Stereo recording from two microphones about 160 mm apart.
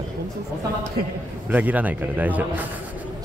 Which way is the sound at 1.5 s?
10° right (ahead or behind).